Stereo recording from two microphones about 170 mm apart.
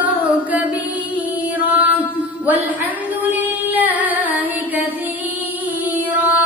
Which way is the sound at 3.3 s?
10° right (ahead or behind).